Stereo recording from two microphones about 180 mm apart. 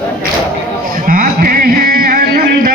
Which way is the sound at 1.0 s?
50° right (ahead or behind).